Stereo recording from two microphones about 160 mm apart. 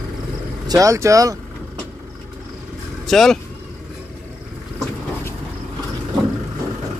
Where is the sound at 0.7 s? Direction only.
20° right (ahead or behind).